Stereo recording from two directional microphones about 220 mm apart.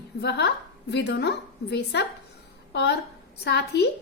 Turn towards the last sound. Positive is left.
turn(degrees=50)  # may be behind; listen again after turning